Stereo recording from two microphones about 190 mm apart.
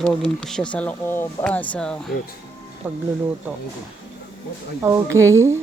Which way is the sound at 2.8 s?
10° right (ahead or behind).